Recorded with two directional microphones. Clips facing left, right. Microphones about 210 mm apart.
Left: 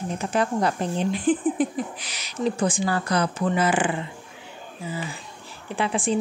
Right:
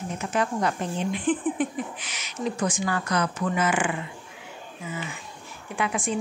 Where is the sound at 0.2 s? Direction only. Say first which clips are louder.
Left 2 dB; 35° left (ahead or behind).